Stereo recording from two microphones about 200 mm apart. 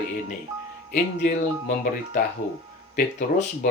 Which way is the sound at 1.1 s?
45° left (ahead or behind).